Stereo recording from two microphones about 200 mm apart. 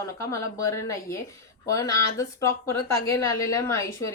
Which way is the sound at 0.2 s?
15° left (ahead or behind).